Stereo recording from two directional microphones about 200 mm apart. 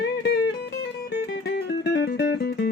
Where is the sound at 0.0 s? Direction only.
55° left (ahead or behind).